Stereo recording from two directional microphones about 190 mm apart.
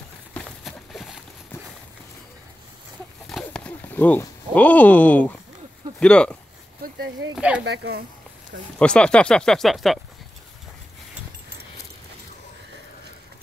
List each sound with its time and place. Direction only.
0.3 s a sound: 5° left (ahead or behind)
3.3 s a sound: 5° left (ahead or behind)
5.9 s speech: 5° left (ahead or behind)
7.3 s speech: 5° right (ahead or behind)
7.6 s speech: 60° right (ahead or behind)
8.7 s speech: 5° left (ahead or behind)